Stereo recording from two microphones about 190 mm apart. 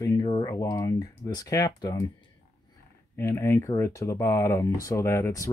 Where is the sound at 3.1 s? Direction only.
15° left (ahead or behind).